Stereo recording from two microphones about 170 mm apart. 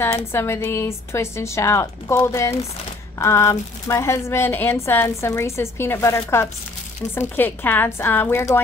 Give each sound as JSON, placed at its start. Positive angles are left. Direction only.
{"t": 0.0, "sound": "a woman's voice", "side_deg": 15}